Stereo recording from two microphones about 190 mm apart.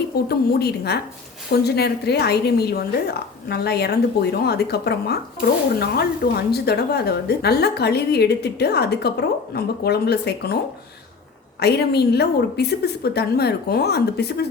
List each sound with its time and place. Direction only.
0.3 s a woman's voice: 60° left (ahead or behind)
11.6 s a woman's voice: 60° left (ahead or behind)